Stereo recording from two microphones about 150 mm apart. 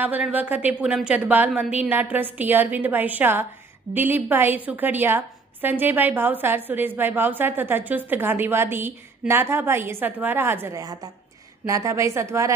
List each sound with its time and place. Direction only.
0.0 s a woman's voice: 10° right (ahead or behind)